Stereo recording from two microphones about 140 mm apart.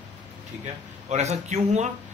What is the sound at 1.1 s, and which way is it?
Speech, 50° right (ahead or behind).